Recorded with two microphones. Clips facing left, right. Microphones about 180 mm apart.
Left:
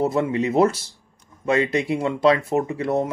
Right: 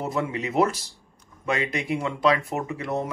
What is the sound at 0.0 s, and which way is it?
Speech, 30° left (ahead or behind).